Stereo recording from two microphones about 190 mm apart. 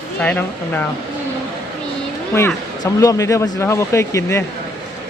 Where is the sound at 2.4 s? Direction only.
15° left (ahead or behind).